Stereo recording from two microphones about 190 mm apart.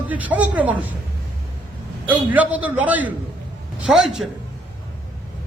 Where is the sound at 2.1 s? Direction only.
10° right (ahead or behind).